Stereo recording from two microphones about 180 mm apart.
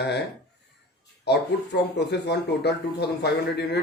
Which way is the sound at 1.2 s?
65° left (ahead or behind).